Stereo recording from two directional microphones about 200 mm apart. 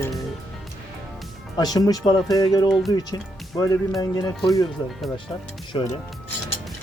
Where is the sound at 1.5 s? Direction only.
20° left (ahead or behind).